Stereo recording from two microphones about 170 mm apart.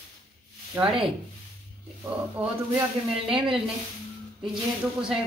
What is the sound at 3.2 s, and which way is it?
Speech, 30° right (ahead or behind).